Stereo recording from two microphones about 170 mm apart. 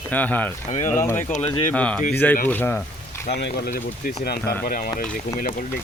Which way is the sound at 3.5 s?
65° left (ahead or behind).